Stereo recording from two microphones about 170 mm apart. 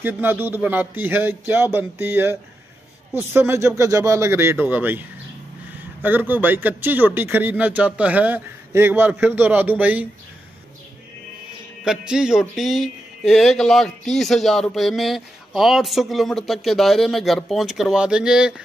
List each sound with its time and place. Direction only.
0.0 s speech: 10° right (ahead or behind)
3.3 s speech: 15° right (ahead or behind)
6.0 s speech: 10° right (ahead or behind)
11.8 s speech: 5° right (ahead or behind)